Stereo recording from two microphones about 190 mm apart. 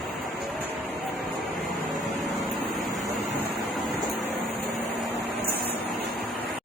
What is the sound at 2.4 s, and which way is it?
Vehicle, centre (ahead or behind).